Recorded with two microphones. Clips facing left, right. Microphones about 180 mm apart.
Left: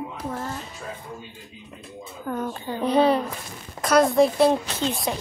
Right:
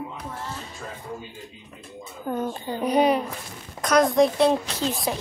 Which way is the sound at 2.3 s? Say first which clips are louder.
Right 1 dB; 20° right (ahead or behind).